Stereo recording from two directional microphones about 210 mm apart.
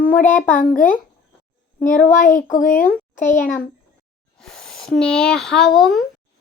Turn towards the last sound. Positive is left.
turn(degrees=0)  # may be behind; listen again after turning